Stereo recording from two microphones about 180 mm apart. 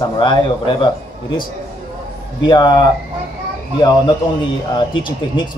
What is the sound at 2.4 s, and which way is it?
Speech, 25° left (ahead or behind).